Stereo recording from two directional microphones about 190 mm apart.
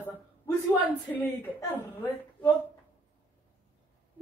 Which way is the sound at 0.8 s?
10° left (ahead or behind).